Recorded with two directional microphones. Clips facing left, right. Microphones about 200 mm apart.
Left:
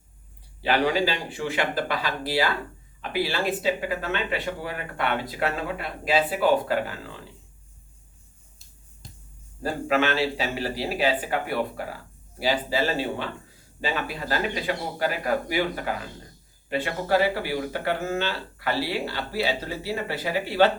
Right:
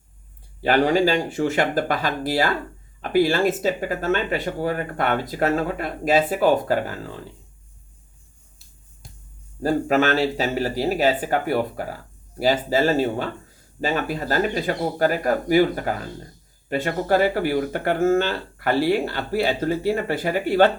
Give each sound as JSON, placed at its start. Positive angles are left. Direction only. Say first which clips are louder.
{"t": 0.6, "sound": "speech", "louder": "right 5 dB", "side_deg": -45}
{"t": 9.8, "sound": "speech", "louder": "right 1 dB", "side_deg": -40}